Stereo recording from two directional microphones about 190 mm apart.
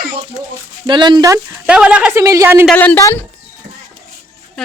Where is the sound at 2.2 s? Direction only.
15° right (ahead or behind).